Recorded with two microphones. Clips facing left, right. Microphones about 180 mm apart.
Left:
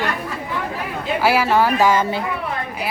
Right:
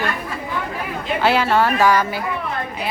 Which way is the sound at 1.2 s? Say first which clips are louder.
Even; 10° left (ahead or behind).